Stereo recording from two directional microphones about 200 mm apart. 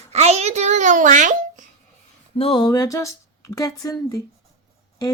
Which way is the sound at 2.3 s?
25° left (ahead or behind).